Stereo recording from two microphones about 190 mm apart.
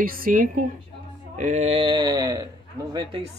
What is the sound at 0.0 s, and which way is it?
Speech, 50° right (ahead or behind).